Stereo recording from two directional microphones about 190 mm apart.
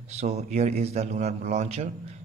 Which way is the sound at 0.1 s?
35° right (ahead or behind).